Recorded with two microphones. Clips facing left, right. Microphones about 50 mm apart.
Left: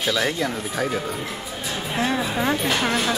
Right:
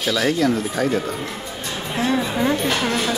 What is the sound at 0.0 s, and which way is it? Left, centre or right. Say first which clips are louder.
Speech: right 4 dB; centre.